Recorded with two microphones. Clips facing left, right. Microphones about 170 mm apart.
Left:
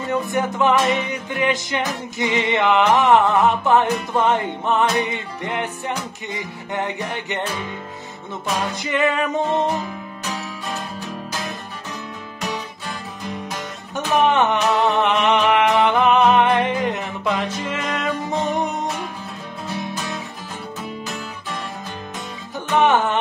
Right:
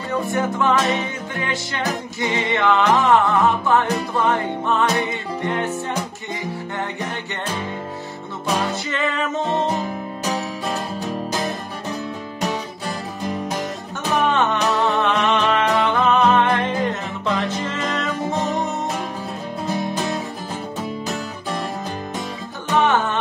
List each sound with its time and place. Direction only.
0.3 s music: 20° left (ahead or behind)
6.7 s music: 20° left (ahead or behind)
8.8 s music: 15° left (ahead or behind)
9.8 s music: 35° right (ahead or behind)
14.2 s music: 20° left (ahead or behind)
22.8 s music: 20° left (ahead or behind)